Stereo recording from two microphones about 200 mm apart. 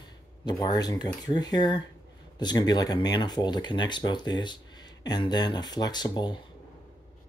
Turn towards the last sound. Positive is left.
turn(degrees=20)  # may be behind; listen again after turning